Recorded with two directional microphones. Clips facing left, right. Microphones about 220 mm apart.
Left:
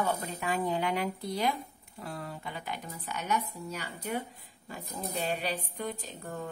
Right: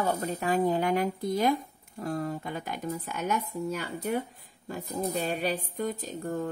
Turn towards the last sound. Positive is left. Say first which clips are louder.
# right 7 dB
turn(degrees=-40)  # may be behind; listen again after turning